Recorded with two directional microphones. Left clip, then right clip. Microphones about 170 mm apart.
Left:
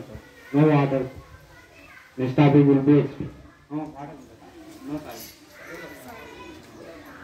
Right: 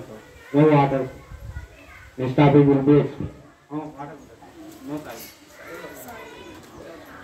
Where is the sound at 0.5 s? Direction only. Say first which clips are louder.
Right 3 dB; 55° left (ahead or behind).